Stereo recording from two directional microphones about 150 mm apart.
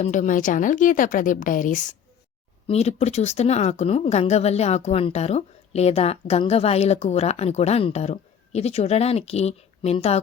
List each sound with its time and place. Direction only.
0.0 s a woman's voice: 55° left (ahead or behind)
2.6 s speech: 45° left (ahead or behind)